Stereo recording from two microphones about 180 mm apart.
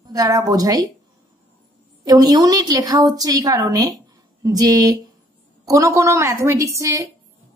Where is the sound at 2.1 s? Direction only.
20° right (ahead or behind).